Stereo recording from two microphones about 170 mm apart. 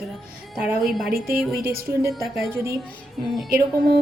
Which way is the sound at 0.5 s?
5° right (ahead or behind).